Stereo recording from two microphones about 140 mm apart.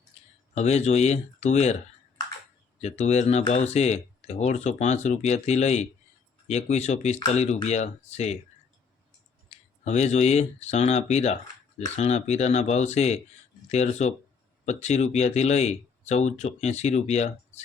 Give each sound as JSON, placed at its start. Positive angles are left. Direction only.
{"t": 0.5, "sound": "speech", "side_deg": 50}
{"t": 2.8, "sound": "speech", "side_deg": 50}
{"t": 9.5, "sound": "a sound", "side_deg": 50}
{"t": 9.8, "sound": "speech", "side_deg": 55}